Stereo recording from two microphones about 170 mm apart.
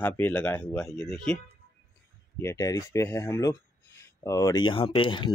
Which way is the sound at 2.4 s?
20° left (ahead or behind).